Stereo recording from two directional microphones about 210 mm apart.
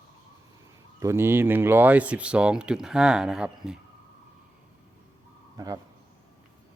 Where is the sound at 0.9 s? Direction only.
10° right (ahead or behind).